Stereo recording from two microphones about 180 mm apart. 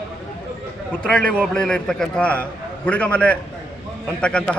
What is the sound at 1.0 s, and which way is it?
A man's voice, 5° left (ahead or behind).